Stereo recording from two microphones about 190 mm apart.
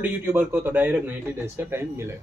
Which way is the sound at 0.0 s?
10° right (ahead or behind).